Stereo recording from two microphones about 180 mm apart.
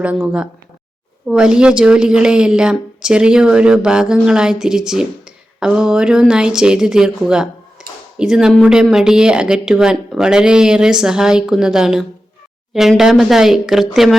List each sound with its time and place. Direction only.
0.0 s speech: 5° right (ahead or behind)
7.8 s a sound: 5° right (ahead or behind)
8.2 s speech: 5° right (ahead or behind)